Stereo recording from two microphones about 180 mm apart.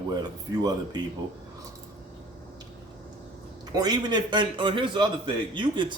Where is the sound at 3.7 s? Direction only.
20° right (ahead or behind).